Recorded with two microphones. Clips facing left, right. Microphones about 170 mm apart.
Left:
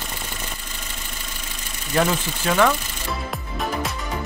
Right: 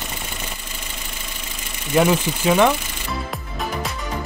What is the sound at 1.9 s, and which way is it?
Speech, 15° right (ahead or behind).